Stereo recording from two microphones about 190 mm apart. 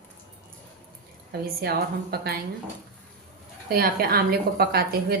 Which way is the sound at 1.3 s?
55° right (ahead or behind).